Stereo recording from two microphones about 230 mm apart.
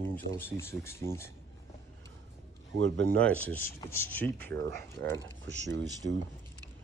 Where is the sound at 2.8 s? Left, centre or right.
Right.